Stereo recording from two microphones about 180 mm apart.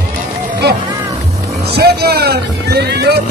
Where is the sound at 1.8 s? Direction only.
60° right (ahead or behind).